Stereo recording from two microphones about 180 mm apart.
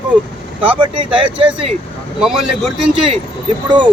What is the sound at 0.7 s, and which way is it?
Speech, 25° right (ahead or behind).